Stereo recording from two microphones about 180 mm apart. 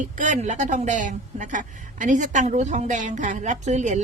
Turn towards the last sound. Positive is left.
turn(degrees=-40)  # may be behind; listen again after turning